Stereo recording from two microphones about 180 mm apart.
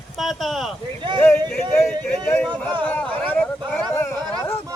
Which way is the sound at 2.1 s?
10° left (ahead or behind).